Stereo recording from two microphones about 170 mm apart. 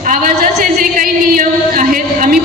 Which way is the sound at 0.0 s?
50° right (ahead or behind).